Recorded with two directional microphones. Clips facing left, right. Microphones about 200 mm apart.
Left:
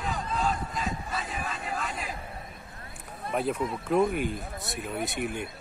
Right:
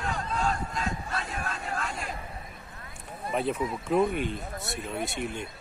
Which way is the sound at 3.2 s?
5° right (ahead or behind).